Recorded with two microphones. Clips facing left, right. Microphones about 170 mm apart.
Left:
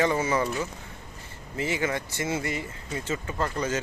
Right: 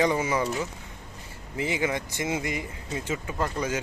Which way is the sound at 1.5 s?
15° right (ahead or behind).